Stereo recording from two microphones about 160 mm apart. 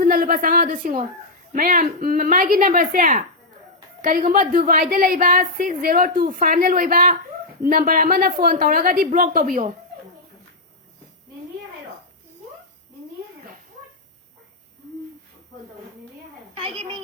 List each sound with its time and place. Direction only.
0.0 s a woman's voice: 60° right (ahead or behind)
16.6 s a woman's voice: 35° right (ahead or behind)